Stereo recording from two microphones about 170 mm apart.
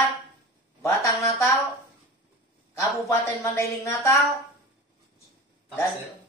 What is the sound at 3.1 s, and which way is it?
Speech, 15° left (ahead or behind).